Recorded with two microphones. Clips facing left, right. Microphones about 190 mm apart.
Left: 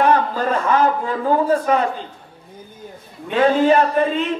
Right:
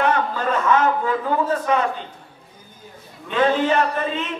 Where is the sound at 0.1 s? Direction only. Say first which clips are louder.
Left 3 dB; 35° left (ahead or behind).